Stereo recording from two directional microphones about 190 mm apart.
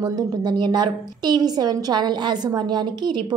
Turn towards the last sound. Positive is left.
turn(degrees=-25)  # may be behind; listen again after turning